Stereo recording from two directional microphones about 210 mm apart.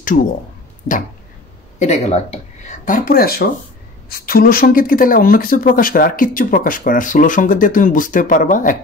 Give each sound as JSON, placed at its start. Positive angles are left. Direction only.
{"t": 1.8, "sound": "speech", "side_deg": 30}